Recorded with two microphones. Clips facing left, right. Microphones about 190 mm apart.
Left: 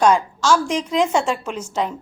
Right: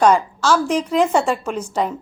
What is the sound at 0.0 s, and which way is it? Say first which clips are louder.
A woman's voice: right 1 dB; 10° right (ahead or behind).